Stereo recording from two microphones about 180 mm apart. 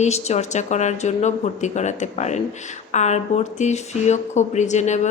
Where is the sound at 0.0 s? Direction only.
40° left (ahead or behind).